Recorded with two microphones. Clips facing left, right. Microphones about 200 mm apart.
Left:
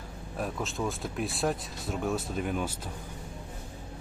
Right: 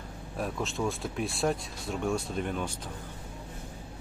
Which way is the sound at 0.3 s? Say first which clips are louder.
Right 1 dB; centre (ahead or behind).